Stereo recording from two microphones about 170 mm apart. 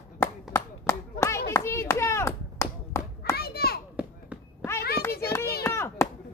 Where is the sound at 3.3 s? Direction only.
65° left (ahead or behind).